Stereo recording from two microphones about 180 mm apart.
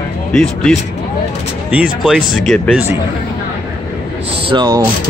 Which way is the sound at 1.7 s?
5° right (ahead or behind).